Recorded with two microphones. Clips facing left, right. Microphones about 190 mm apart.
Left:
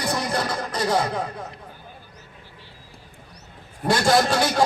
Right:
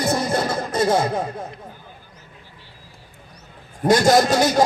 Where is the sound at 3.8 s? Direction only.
40° right (ahead or behind).